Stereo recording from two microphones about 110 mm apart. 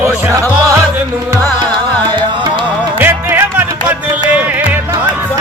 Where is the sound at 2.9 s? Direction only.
20° right (ahead or behind).